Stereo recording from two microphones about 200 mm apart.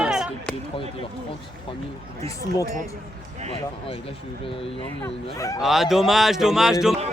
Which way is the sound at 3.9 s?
30° left (ahead or behind).